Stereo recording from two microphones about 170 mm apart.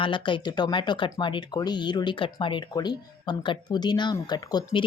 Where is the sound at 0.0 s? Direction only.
30° left (ahead or behind).